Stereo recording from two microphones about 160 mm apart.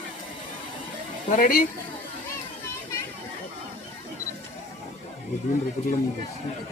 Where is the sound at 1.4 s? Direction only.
60° left (ahead or behind).